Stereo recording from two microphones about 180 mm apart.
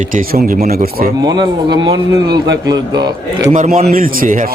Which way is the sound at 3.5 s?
45° right (ahead or behind).